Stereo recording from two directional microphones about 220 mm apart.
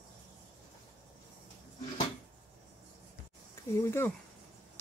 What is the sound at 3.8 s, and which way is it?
Speech, 10° left (ahead or behind).